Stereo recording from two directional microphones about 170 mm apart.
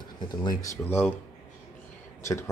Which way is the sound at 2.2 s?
15° left (ahead or behind).